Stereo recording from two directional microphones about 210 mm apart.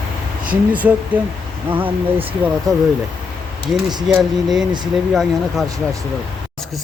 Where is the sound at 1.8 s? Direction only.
25° right (ahead or behind).